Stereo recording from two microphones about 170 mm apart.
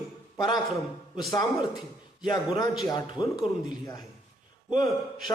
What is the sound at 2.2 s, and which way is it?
Speech, 25° left (ahead or behind).